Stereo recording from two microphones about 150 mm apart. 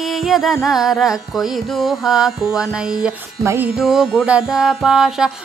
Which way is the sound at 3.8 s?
Centre (ahead or behind).